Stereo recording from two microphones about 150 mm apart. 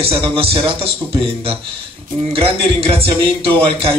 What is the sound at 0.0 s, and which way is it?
A man's voice, 40° right (ahead or behind).